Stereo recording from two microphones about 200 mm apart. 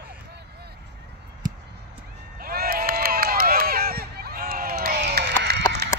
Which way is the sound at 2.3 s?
50° right (ahead or behind).